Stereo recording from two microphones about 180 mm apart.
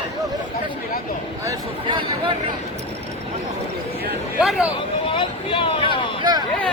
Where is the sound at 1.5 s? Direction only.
25° right (ahead or behind).